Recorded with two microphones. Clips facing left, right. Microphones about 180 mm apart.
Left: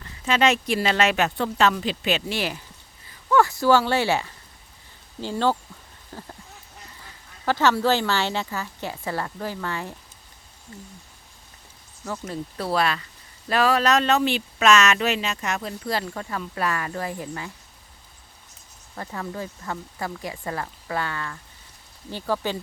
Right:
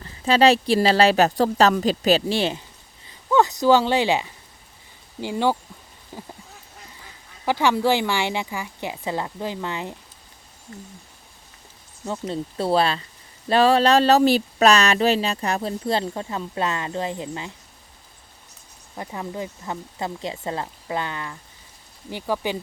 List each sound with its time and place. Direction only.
0.0 s speech: 35° right (ahead or behind)
12.0 s speech: 25° right (ahead or behind)
18.9 s speech: 15° right (ahead or behind)